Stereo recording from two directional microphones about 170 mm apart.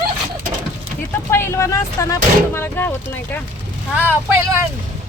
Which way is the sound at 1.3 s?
15° left (ahead or behind).